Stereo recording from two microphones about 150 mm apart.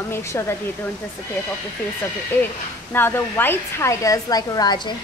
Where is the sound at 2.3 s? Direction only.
15° left (ahead or behind).